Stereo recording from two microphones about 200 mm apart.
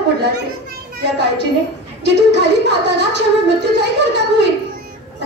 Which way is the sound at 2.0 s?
60° right (ahead or behind).